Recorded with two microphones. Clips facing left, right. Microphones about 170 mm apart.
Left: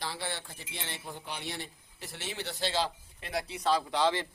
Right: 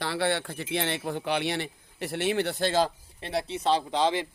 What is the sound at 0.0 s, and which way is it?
Speech, 70° right (ahead or behind).